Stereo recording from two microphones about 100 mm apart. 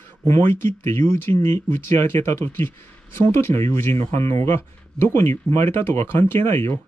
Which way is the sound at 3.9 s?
85° right.